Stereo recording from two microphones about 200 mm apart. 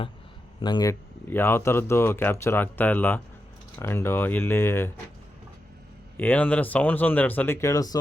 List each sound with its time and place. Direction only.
0.6 s speech: 20° left (ahead or behind)
6.1 s speech: 10° left (ahead or behind)